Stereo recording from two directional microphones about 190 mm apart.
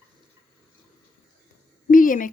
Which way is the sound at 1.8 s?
45° left (ahead or behind).